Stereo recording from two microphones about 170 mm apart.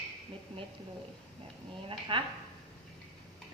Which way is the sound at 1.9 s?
30° right (ahead or behind).